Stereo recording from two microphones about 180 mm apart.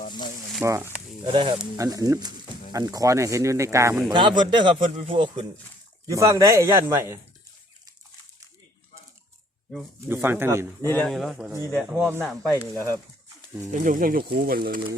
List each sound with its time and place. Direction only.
0.6 s speech: 15° right (ahead or behind)
1.2 s speech: 30° right (ahead or behind)
1.5 s speech: 15° right (ahead or behind)
4.1 s speech: 25° right (ahead or behind)
10.1 s speech: 10° right (ahead or behind)
10.8 s speech: 5° left (ahead or behind)
11.9 s speech: 15° right (ahead or behind)
12.2 s speech: centre (ahead or behind)
12.7 s speech: 15° right (ahead or behind)
13.7 s speech: 45° right (ahead or behind)